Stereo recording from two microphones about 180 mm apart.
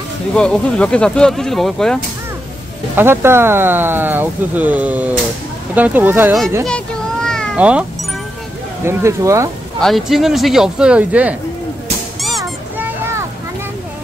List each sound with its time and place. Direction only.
0.4 s speech: 5° left (ahead or behind)
3.0 s speech: 15° right (ahead or behind)
6.6 s meow: 5° left (ahead or behind)
8.8 s speech: 15° right (ahead or behind)
9.8 s speech: centre (ahead or behind)
12.2 s a sound: centre (ahead or behind)